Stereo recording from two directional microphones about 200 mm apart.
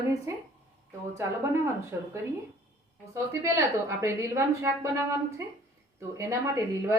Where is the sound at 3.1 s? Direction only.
15° right (ahead or behind).